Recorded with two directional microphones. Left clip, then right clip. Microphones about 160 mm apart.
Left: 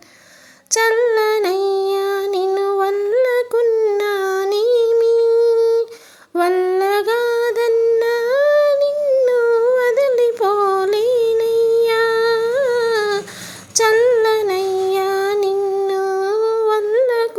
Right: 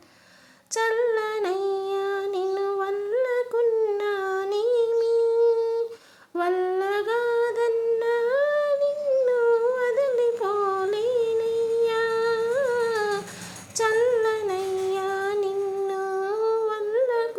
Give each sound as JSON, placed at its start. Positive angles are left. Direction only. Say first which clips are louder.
{"t": 0.8, "sound": "female singing", "louder": "left 8 dB", "side_deg": 30}
{"t": 2.5, "sound": "humming", "louder": "left 9 dB", "side_deg": 30}
{"t": 4.5, "sound": "child singing", "louder": "left 8 dB", "side_deg": 30}
{"t": 5.3, "sound": "humming", "louder": "left 8 dB", "side_deg": 25}
{"t": 13.7, "sound": "a sound", "louder": "left 8 dB", "side_deg": 30}
{"t": 14.8, "sound": "child singing", "louder": "left 8 dB", "side_deg": 30}
{"t": 16.3, "sound": "humming", "louder": "left 8 dB", "side_deg": 25}